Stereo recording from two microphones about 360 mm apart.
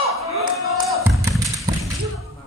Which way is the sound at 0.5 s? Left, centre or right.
Centre.